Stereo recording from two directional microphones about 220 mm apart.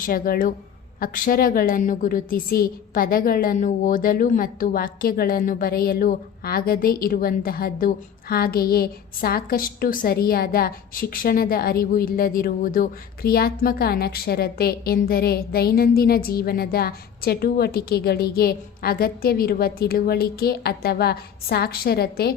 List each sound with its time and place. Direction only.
0.0 s a woman's voice: 40° left (ahead or behind)